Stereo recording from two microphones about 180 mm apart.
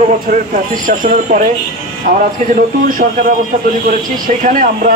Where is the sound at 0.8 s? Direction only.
45° right (ahead or behind).